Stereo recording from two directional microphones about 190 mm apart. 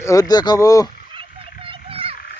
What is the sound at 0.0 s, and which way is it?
Speech, 15° left (ahead or behind).